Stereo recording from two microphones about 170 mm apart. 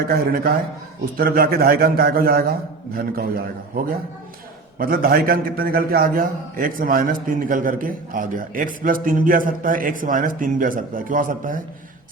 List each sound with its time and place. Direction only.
0.0 s a man's voice: 60° right (ahead or behind)